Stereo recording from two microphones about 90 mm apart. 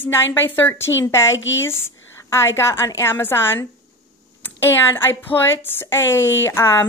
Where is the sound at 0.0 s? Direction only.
25° left (ahead or behind).